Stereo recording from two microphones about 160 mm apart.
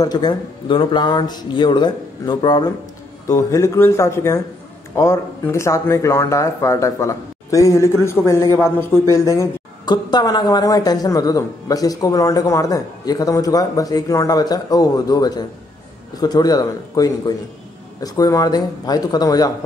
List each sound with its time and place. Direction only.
0.0 s a woman's voice: 25° left (ahead or behind)